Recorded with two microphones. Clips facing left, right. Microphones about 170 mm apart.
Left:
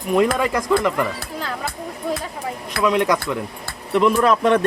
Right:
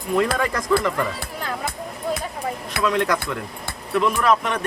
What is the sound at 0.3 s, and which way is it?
Speech, 15° left (ahead or behind).